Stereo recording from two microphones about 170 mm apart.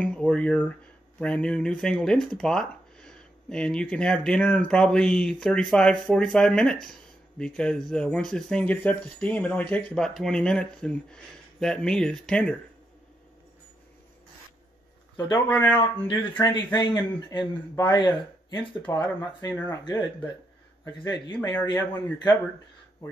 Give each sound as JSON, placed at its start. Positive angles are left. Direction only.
{"t": 0.0, "sound": "speech", "side_deg": 5}
{"t": 15.4, "sound": "speech", "side_deg": 10}
{"t": 16.3, "sound": "speech", "side_deg": 25}
{"t": 21.4, "sound": "speech", "side_deg": 10}